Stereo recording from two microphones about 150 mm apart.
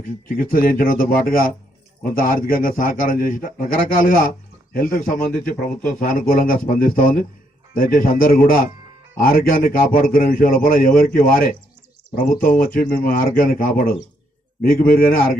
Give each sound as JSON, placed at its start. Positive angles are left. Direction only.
{"t": 0.3, "sound": "a man's voice", "side_deg": 75}